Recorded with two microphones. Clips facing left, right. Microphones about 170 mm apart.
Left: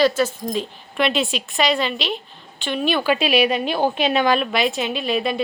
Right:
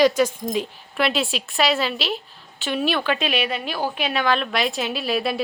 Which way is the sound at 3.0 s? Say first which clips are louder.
Left 5 dB; 10° left (ahead or behind).